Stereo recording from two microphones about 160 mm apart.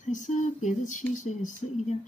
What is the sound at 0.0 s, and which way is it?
Speech, 50° left (ahead or behind).